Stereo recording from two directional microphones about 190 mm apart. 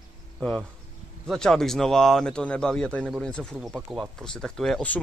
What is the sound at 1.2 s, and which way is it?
Speech, 5° left (ahead or behind).